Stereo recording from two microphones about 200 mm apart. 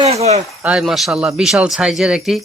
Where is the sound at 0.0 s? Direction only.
30° right (ahead or behind).